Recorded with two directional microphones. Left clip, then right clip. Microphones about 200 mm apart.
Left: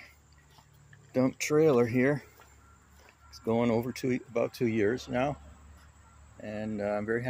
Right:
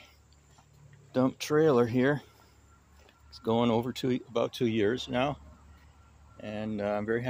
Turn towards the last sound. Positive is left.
turn(degrees=-5)  # may be behind; listen again after turning